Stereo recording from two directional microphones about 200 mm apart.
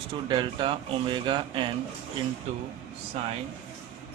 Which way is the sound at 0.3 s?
25° right (ahead or behind).